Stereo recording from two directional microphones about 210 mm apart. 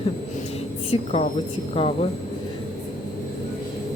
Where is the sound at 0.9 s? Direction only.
30° left (ahead or behind).